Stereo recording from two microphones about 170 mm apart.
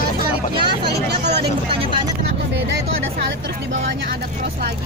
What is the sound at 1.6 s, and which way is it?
Speech, 30° right (ahead or behind).